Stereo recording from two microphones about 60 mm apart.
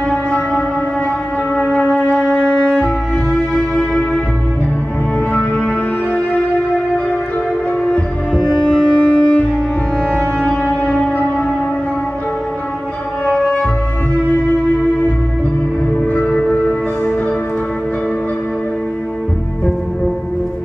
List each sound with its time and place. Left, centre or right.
0.3 s music: left
1.7 s music: centre
8.6 s music: centre
10.7 s music: centre
16.3 s music: centre